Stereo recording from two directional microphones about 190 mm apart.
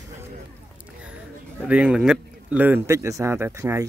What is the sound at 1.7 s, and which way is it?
A man's voice, 5° right (ahead or behind).